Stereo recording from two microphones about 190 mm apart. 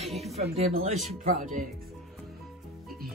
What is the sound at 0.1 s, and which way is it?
Music, centre (ahead or behind).